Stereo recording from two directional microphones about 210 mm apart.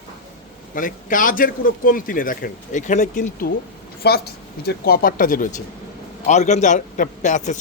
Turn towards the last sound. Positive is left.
turn(degrees=35)  # may be behind; listen again after turning